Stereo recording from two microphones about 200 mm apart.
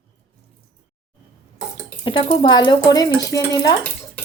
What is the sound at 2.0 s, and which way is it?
Speech, 25° left (ahead or behind).